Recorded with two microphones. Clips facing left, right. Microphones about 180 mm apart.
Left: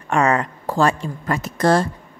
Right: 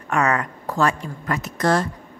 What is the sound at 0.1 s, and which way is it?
A woman's voice, 25° left (ahead or behind).